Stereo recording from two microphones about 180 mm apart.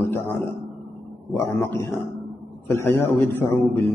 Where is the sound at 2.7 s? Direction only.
15° left (ahead or behind).